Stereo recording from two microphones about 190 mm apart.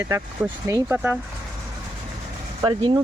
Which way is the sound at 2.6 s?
25° right (ahead or behind).